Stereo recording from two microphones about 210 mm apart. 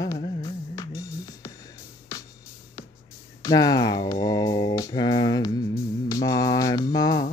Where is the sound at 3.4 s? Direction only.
15° left (ahead or behind).